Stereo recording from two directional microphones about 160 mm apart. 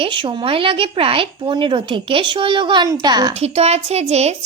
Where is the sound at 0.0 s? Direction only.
30° right (ahead or behind).